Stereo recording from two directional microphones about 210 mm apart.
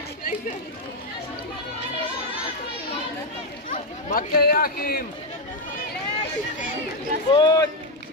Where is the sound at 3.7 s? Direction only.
40° left (ahead or behind).